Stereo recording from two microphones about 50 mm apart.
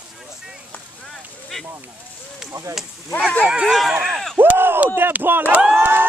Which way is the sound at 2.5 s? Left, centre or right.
Right.